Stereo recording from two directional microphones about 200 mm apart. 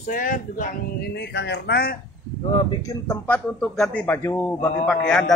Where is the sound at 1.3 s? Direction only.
60° left (ahead or behind).